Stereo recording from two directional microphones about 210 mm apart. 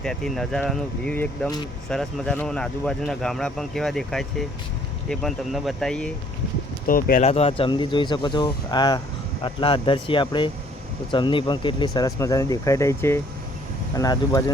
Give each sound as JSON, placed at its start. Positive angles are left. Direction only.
{"t": 0.0, "sound": "speech", "side_deg": 0}
{"t": 6.8, "sound": "speech", "side_deg": 40}